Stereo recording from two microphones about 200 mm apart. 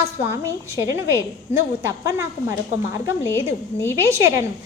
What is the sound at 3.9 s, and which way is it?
Speech, 15° right (ahead or behind).